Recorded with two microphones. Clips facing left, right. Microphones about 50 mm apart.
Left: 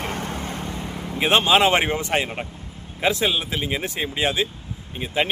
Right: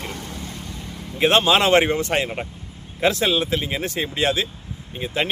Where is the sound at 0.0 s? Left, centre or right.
Left.